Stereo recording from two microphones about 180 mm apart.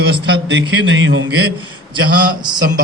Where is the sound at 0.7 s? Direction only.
90° right.